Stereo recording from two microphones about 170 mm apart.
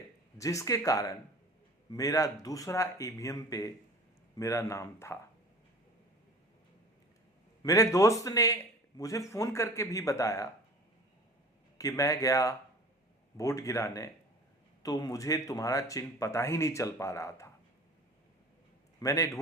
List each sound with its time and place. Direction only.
0.3 s a man's voice: 20° left (ahead or behind)
7.6 s a man's voice: 20° left (ahead or behind)
11.8 s a man's voice: 20° left (ahead or behind)
18.9 s a man's voice: 20° left (ahead or behind)